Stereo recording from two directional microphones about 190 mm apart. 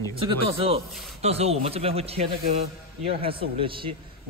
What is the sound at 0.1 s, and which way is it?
A man's voice, 30° right (ahead or behind).